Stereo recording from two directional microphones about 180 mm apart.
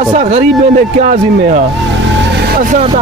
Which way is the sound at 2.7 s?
30° right (ahead or behind).